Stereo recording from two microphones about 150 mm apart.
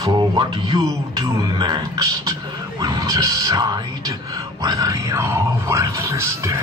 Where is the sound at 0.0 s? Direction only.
25° right (ahead or behind).